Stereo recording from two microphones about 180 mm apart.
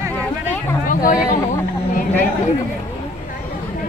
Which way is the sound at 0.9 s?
50° left (ahead or behind).